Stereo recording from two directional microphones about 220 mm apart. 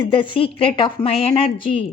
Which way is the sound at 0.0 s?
25° left (ahead or behind).